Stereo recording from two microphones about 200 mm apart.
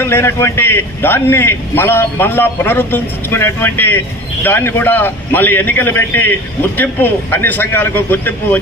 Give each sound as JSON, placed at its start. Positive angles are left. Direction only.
{"t": 0.0, "sound": "a man's voice", "side_deg": 10}